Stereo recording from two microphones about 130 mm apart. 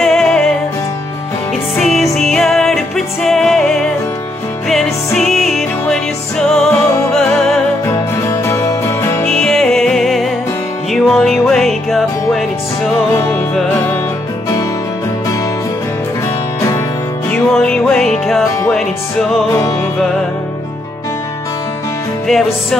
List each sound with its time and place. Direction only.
0.0 s music: 5° left (ahead or behind)
1.8 s music: centre (ahead or behind)
7.8 s music: 20° left (ahead or behind)
9.3 s music: 5° left (ahead or behind)
17.3 s music: 5° left (ahead or behind)